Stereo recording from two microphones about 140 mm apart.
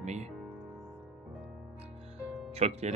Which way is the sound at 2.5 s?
50° right (ahead or behind).